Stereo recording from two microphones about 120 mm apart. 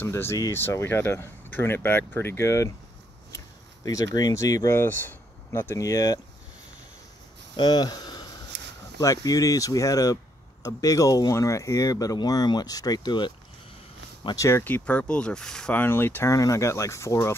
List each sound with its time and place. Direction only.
0.0 s speech: 20° left (ahead or behind)
3.8 s speech: 30° left (ahead or behind)
7.5 s speech: 35° left (ahead or behind)
14.6 s speech: 10° left (ahead or behind)